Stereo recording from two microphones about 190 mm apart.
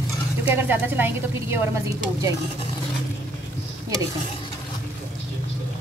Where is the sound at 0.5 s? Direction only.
10° right (ahead or behind).